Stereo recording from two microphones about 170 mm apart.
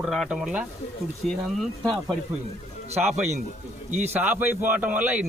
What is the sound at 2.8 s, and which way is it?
Speech, 40° right (ahead or behind).